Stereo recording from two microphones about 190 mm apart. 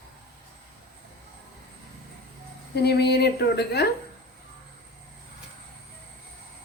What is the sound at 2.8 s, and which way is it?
Speech, 60° left (ahead or behind).